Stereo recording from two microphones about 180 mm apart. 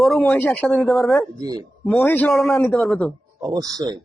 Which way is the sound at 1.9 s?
10° left (ahead or behind).